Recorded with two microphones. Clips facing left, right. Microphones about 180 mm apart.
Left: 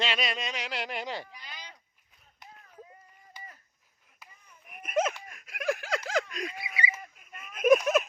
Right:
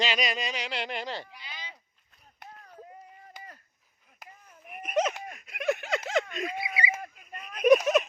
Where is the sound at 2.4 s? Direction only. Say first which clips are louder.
Right 3 dB; 55° right (ahead or behind).